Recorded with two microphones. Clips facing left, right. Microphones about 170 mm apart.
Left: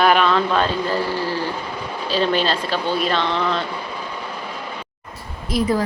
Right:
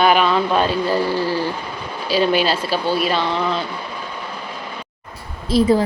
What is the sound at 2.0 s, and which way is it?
Speech, 10° right (ahead or behind).